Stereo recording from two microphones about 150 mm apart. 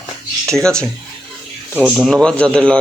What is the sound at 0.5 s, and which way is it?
Speech, 5° left (ahead or behind).